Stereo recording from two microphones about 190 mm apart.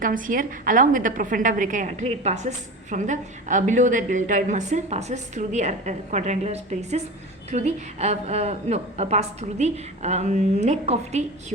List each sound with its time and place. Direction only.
0.0 s a woman's voice: 45° right (ahead or behind)